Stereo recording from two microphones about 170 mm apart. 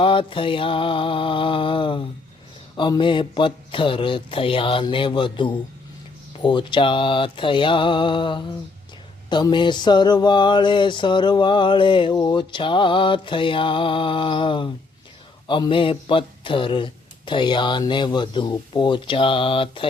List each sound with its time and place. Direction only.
0.0 s mantra: 30° left (ahead or behind)